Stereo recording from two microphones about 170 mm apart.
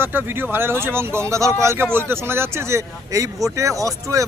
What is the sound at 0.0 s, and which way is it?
Speech, 10° right (ahead or behind).